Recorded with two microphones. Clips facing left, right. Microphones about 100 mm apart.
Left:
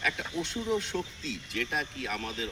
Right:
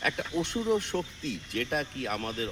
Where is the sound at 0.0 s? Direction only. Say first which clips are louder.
Right 3 dB; 55° right (ahead or behind).